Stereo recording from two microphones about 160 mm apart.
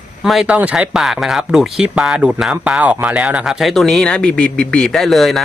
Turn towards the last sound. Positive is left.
turn(degrees=0)  # may be behind; listen again after turning